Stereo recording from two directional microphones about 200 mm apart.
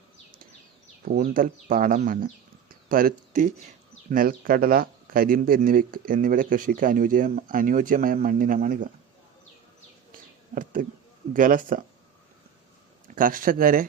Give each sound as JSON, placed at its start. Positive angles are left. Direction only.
{"t": 1.0, "sound": "speech", "side_deg": -45}
{"t": 10.1, "sound": "a sound", "side_deg": -45}
{"t": 11.3, "sound": "speech", "side_deg": -40}
{"t": 13.1, "sound": "speech", "side_deg": -45}